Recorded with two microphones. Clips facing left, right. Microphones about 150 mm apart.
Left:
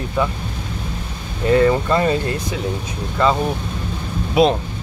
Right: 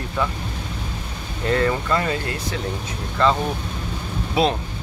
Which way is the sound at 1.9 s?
25° left (ahead or behind).